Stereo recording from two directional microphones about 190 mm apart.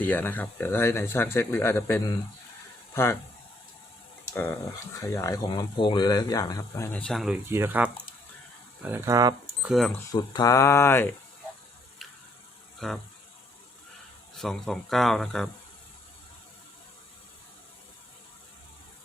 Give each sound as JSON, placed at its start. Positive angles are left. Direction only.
{"t": 0.0, "sound": "speech", "side_deg": 10}
{"t": 4.9, "sound": "speech", "side_deg": 15}
{"t": 9.6, "sound": "speech", "side_deg": 0}
{"t": 10.1, "sound": "speech", "side_deg": 20}
{"t": 12.8, "sound": "speech", "side_deg": 0}
{"t": 14.3, "sound": "speech", "side_deg": 0}